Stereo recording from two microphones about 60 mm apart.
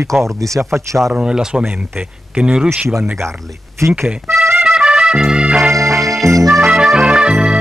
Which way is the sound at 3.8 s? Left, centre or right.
Right.